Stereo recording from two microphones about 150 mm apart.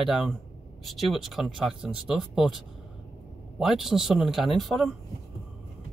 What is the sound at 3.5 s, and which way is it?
Speech, centre (ahead or behind).